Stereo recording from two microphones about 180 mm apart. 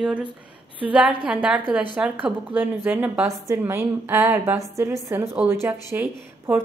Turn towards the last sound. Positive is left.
turn(degrees=-10)  # may be behind; listen again after turning